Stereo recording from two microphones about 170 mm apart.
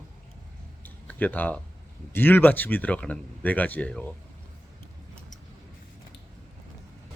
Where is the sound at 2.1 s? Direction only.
10° left (ahead or behind).